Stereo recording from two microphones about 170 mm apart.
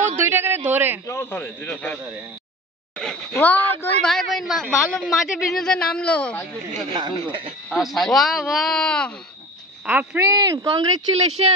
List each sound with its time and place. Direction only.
0.2 s a sound: 10° right (ahead or behind)
0.7 s a man's voice: 10° right (ahead or behind)
1.0 s a man's voice: 15° left (ahead or behind)
3.0 s a woman's voice: 5° left (ahead or behind)
6.9 s speech: 25° right (ahead or behind)
7.7 s a woman's voice: centre (ahead or behind)
9.8 s a man's voice: 10° right (ahead or behind)
10.3 s speech: 20° right (ahead or behind)
11.4 s speech: 35° right (ahead or behind)